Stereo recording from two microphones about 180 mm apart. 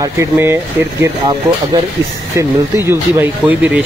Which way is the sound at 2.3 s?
15° right (ahead or behind).